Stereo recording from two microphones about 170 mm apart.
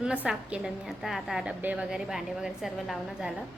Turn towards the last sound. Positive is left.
turn(degrees=-5)  # may be behind; listen again after turning